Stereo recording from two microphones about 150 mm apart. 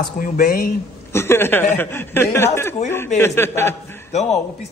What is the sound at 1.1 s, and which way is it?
A man's voice, 15° left (ahead or behind).